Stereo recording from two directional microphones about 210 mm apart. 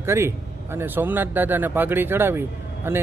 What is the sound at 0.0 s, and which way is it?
Speech, 10° right (ahead or behind).